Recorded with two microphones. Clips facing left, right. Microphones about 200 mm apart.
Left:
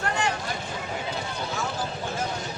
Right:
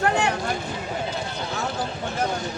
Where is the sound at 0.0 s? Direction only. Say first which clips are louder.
Right 6 dB; 60° right (ahead or behind).